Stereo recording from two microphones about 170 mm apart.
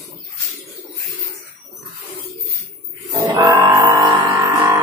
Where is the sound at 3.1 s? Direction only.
15° right (ahead or behind).